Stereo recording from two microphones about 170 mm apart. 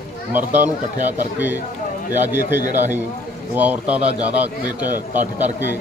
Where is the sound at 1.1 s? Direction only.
10° right (ahead or behind).